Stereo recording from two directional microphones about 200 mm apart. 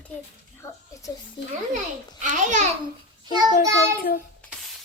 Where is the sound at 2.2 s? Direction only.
40° right (ahead or behind).